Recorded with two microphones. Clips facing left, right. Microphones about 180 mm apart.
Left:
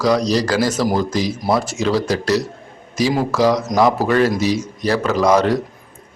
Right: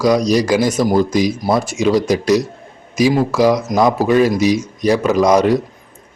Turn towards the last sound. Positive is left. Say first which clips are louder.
# right 3 dB
turn(degrees=-15)  # may be behind; listen again after turning